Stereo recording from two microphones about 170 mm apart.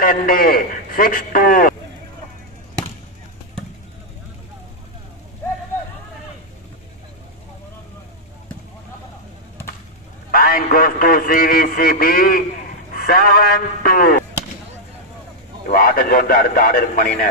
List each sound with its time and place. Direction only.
0.0 s a man's voice: 55° left (ahead or behind)
10.3 s a sound: 60° left (ahead or behind)
12.9 s a man's voice: 60° left (ahead or behind)
15.7 s a man's voice: 60° left (ahead or behind)